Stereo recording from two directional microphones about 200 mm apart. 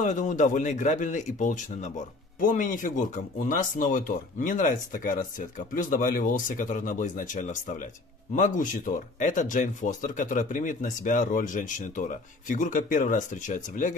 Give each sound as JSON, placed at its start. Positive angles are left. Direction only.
{"t": 0.0, "sound": "speech", "side_deg": 40}